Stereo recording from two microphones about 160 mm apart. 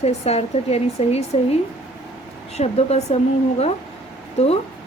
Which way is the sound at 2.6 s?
40° left (ahead or behind).